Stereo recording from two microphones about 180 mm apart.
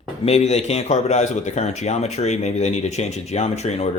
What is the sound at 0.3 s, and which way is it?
Speech, 35° left (ahead or behind).